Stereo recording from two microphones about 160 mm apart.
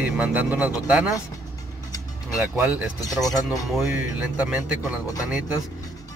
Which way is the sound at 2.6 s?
10° right (ahead or behind).